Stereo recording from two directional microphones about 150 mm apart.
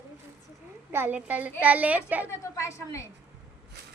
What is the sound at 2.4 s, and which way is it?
Speech, 20° left (ahead or behind).